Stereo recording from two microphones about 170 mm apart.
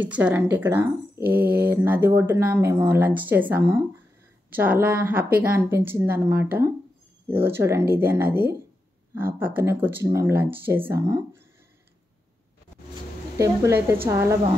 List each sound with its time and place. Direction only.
0.0 s speech: 10° right (ahead or behind)
13.4 s speech: 15° right (ahead or behind)